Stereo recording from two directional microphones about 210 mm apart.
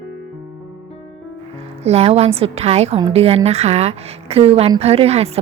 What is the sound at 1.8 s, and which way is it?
A woman's voice, 30° right (ahead or behind).